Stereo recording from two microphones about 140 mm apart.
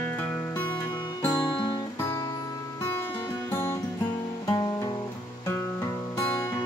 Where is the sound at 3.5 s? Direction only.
20° left (ahead or behind).